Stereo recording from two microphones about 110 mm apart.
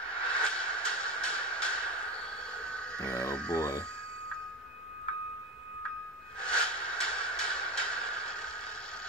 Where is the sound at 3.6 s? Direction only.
35° left (ahead or behind).